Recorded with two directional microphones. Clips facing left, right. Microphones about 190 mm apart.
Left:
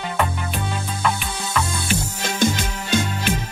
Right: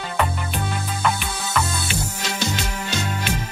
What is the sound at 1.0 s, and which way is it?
Music, 5° right (ahead or behind).